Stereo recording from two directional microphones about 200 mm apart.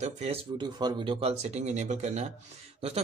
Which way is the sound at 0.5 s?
20° right (ahead or behind).